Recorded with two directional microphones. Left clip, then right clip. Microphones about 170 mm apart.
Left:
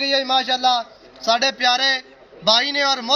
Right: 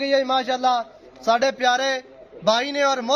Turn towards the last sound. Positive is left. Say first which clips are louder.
# left 1 dB
turn(degrees=-50)  # may be behind; listen again after turning